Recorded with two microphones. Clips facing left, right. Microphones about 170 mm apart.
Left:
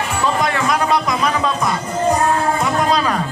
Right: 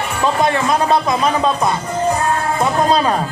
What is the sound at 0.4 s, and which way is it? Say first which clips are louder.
Music: right 2 dB; 25° right (ahead or behind).